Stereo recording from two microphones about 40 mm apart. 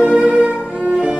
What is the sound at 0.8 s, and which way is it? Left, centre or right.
Cello, right.